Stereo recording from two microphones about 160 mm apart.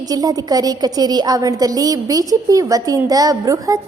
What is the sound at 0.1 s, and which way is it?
A woman's voice, 25° right (ahead or behind).